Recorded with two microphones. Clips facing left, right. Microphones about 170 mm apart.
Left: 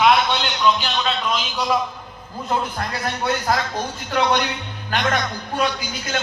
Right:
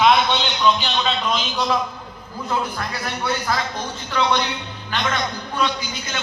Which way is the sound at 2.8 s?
45° left (ahead or behind).